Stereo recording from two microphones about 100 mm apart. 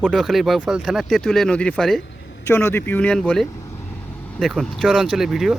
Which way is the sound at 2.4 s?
25° left (ahead or behind).